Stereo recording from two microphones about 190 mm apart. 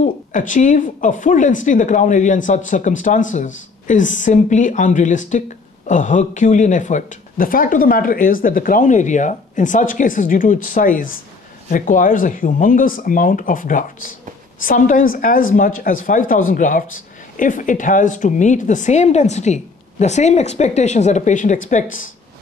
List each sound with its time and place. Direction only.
0.0 s speech: 40° left (ahead or behind)